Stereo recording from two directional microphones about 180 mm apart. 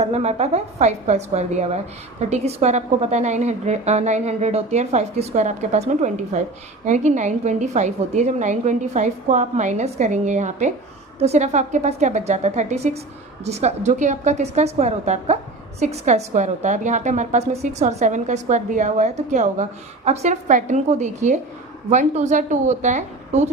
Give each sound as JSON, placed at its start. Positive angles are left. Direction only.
{"t": 0.0, "sound": "a woman's voice", "side_deg": -35}